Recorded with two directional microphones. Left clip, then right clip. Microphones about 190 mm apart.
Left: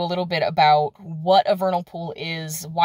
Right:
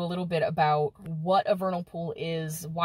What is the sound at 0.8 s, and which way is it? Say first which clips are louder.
Speech: left 8 dB; 15° left (ahead or behind).